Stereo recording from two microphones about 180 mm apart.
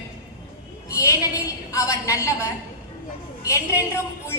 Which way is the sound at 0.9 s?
15° left (ahead or behind).